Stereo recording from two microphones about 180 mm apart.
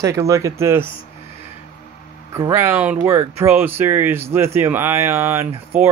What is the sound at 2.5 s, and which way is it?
Speech, 15° right (ahead or behind).